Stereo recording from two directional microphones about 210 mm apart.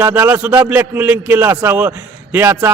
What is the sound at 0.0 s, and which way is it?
A man's voice, 10° right (ahead or behind).